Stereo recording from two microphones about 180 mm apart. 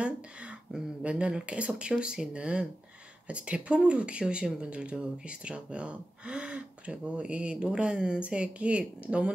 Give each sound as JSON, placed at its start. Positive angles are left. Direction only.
{"t": 0.0, "sound": "speech", "side_deg": -5}